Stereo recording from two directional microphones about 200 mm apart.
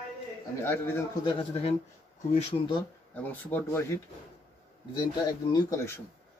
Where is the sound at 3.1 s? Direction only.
10° left (ahead or behind).